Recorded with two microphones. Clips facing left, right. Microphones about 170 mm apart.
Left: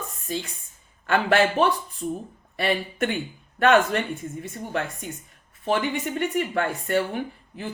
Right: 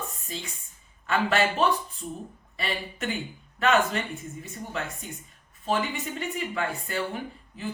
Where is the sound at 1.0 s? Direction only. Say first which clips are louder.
Left 4 dB; 65° left (ahead or behind).